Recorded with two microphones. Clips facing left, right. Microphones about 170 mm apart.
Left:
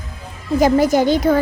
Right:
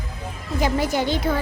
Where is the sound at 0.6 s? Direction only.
45° left (ahead or behind).